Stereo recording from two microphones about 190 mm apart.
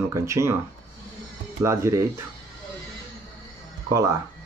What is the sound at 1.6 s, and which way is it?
Speech, 15° right (ahead or behind).